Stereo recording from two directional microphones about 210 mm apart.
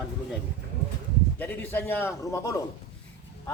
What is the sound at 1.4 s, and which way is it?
A man's voice, 10° left (ahead or behind).